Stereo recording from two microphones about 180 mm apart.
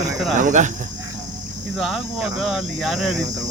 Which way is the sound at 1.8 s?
Centre (ahead or behind).